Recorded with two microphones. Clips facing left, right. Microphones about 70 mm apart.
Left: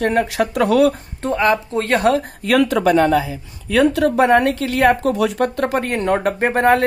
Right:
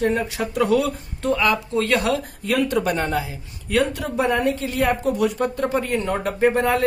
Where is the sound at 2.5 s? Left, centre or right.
Left.